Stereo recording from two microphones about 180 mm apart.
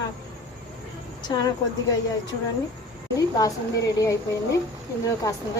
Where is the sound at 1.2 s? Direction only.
25° left (ahead or behind).